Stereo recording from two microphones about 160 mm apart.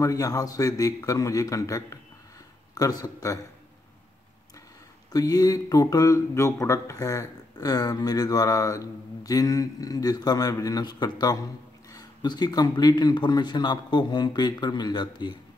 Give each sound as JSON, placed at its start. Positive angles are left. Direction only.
{"t": 0.0, "sound": "speech", "side_deg": 20}
{"t": 5.1, "sound": "speech", "side_deg": 25}